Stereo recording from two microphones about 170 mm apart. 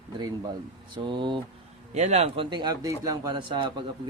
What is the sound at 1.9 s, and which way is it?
Speech, 45° right (ahead or behind).